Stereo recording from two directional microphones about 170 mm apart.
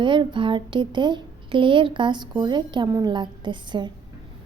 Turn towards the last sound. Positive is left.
turn(degrees=-25)  # may be behind; listen again after turning